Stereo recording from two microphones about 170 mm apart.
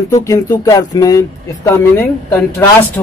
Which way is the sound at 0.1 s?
20° left (ahead or behind).